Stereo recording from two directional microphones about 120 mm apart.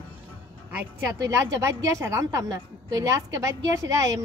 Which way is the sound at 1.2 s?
30° right (ahead or behind).